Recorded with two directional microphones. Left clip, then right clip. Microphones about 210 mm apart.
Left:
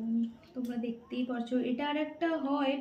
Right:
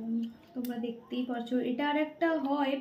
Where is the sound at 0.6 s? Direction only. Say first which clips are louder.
Right 1 dB; 5° right (ahead or behind).